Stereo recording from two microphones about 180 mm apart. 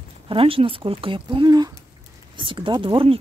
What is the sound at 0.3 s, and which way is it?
Speech, 30° right (ahead or behind).